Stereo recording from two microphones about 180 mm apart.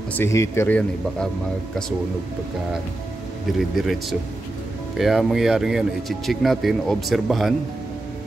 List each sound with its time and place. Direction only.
0.1 s speech: 15° left (ahead or behind)
3.5 s speech: centre (ahead or behind)